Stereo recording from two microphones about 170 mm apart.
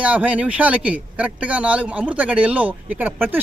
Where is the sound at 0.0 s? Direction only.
10° right (ahead or behind).